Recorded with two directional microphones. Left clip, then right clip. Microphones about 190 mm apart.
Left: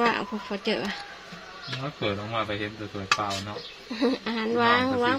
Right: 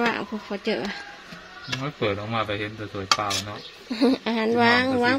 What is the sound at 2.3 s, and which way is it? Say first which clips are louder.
Speech: right 2 dB; 60° right (ahead or behind).